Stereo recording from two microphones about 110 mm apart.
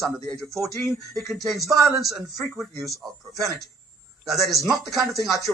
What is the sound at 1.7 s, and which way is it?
Speech, 30° right (ahead or behind).